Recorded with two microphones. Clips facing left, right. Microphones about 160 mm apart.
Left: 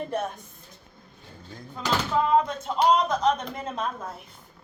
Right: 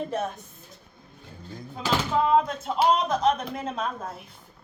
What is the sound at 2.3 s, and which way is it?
A man's voice, 5° right (ahead or behind).